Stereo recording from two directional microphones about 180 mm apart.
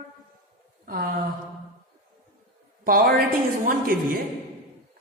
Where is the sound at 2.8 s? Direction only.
50° right (ahead or behind).